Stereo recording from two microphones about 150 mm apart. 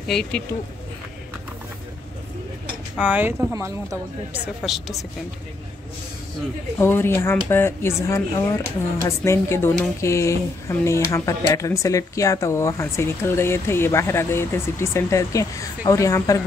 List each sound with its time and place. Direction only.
0.1 s speech: 5° left (ahead or behind)
3.0 s a woman's voice: 10° right (ahead or behind)
4.3 s speech: centre (ahead or behind)
6.8 s speech: 15° left (ahead or behind)